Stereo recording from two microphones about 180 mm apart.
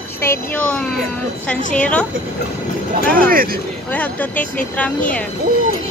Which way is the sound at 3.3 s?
50° right (ahead or behind).